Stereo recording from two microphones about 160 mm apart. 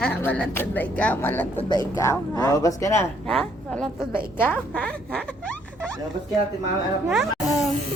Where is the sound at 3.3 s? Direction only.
Centre (ahead or behind).